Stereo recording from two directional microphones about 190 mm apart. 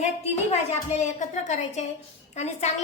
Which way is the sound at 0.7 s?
35° left (ahead or behind).